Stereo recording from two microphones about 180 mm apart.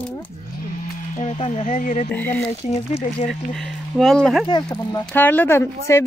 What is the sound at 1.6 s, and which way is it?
Speech, 50° left (ahead or behind).